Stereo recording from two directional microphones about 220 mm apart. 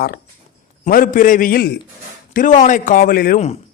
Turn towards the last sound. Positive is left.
turn(degrees=35)  # may be behind; listen again after turning